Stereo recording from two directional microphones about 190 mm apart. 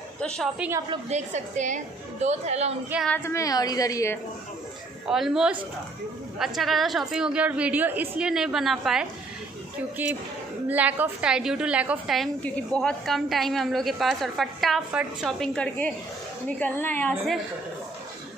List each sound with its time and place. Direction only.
0.2 s a woman's voice: 5° left (ahead or behind)
0.6 s a woman's voice: 15° right (ahead or behind)
1.0 s a woman's voice: 40° right (ahead or behind)
3.1 s a woman's voice: 15° left (ahead or behind)
5.0 s a woman's voice: centre (ahead or behind)